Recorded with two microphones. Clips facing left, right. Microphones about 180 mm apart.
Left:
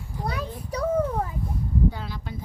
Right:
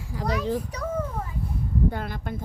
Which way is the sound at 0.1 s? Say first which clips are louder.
Right 6 dB; 90° right.